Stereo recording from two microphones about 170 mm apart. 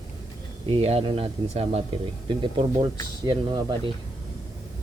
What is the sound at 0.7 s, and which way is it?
Speech, 35° right (ahead or behind).